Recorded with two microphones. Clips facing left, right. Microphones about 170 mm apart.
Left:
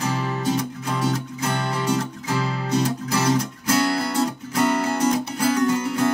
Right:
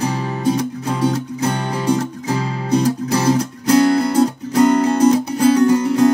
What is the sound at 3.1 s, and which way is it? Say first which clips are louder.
Music: right 5 dB; 35° right (ahead or behind).